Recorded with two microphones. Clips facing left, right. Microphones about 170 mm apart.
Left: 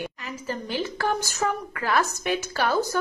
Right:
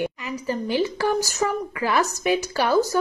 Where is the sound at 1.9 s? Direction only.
Centre (ahead or behind).